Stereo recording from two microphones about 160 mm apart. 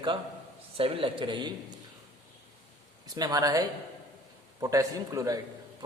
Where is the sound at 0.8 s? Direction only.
35° right (ahead or behind).